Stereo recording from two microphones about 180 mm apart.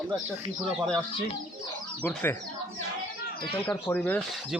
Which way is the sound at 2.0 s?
15° left (ahead or behind).